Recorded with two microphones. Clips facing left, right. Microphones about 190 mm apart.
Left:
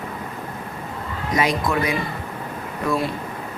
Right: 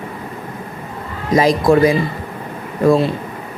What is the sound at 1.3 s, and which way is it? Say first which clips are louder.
A woman's voice: right 9 dB; 35° right (ahead or behind).